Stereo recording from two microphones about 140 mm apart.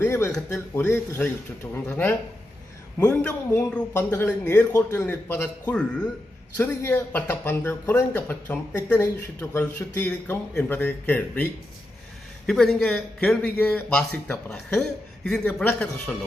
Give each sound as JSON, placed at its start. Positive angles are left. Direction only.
{"t": 0.0, "sound": "a sound", "side_deg": 20}
{"t": 0.3, "sound": "speech", "side_deg": 5}
{"t": 0.8, "sound": "a man's voice", "side_deg": 20}
{"t": 3.9, "sound": "a man's voice", "side_deg": 20}
{"t": 12.5, "sound": "a man's voice", "side_deg": 5}